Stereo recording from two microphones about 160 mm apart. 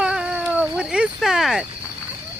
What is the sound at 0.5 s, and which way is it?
Cricket, 5° right (ahead or behind).